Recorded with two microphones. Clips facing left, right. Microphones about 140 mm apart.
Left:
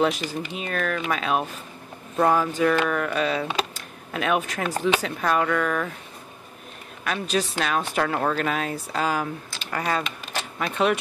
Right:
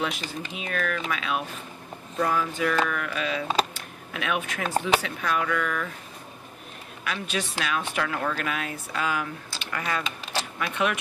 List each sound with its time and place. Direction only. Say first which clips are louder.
0.0 s speech: left 7 dB; 40° left (ahead or behind)
7.1 s speech: left 5 dB; 40° left (ahead or behind)